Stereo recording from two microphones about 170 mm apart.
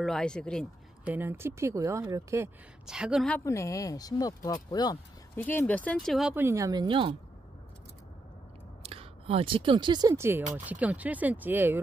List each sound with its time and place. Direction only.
0.0 s speech: 5° left (ahead or behind)
1.0 s speech: 10° right (ahead or behind)
2.9 s speech: 5° right (ahead or behind)
3.3 s speech: 15° left (ahead or behind)
5.3 s speech: 10° left (ahead or behind)
6.3 s speech: 15° right (ahead or behind)
8.8 s speech: 35° right (ahead or behind); by 11.8 s 10° right (ahead or behind)